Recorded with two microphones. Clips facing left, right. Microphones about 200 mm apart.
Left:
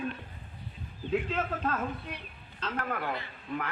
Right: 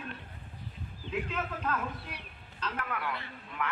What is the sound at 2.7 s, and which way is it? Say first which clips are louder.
Speech: left 4 dB; 45° left (ahead or behind).